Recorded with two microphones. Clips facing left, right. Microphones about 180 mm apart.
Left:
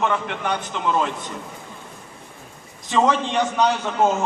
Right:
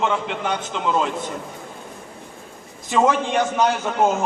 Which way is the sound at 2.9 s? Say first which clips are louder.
Right 1 dB; 5° right (ahead or behind).